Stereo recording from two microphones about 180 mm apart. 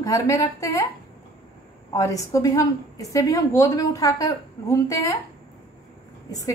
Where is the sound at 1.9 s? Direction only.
15° left (ahead or behind).